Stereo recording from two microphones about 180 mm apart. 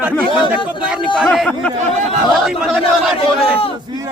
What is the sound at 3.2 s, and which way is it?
Speech, 30° left (ahead or behind).